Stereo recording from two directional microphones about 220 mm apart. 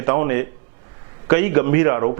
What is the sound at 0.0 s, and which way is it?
A man's voice, 15° right (ahead or behind).